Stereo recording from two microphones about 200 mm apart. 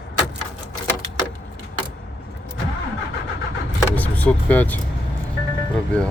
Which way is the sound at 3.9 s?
5° left (ahead or behind).